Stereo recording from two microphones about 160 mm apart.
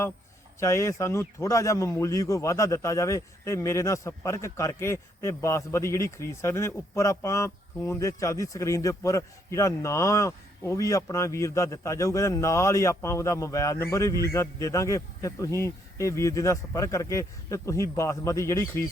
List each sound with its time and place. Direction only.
0.6 s a man's voice: 20° left (ahead or behind)